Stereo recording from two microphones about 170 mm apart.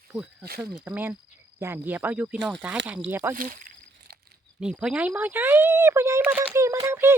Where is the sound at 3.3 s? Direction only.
50° right (ahead or behind).